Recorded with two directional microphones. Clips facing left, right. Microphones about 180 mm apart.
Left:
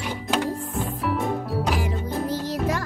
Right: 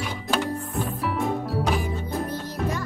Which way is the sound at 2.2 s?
90° left.